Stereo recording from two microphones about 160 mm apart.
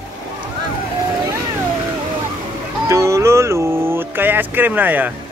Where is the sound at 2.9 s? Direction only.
20° right (ahead or behind).